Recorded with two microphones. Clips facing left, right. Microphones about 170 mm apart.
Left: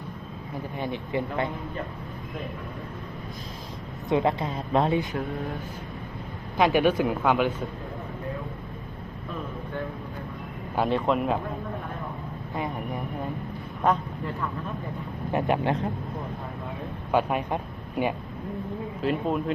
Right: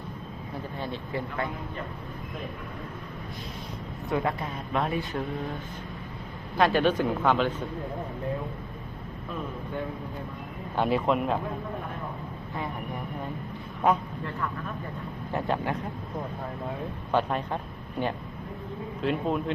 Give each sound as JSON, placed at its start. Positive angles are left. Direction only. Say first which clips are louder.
{"t": 0.8, "sound": "speech", "louder": "left 5 dB", "side_deg": 20}
{"t": 4.1, "sound": "a woman's voice", "louder": "left 5 dB", "side_deg": 25}
{"t": 6.6, "sound": "speech", "louder": "left 2 dB", "side_deg": 15}
{"t": 10.8, "sound": "speech", "louder": "left 1 dB", "side_deg": -5}
{"t": 15.3, "sound": "speech", "louder": "left 4 dB", "side_deg": 15}
{"t": 17.1, "sound": "speech", "louder": "left 2 dB", "side_deg": 10}
{"t": 19.0, "sound": "speech", "louder": "left 1 dB", "side_deg": 0}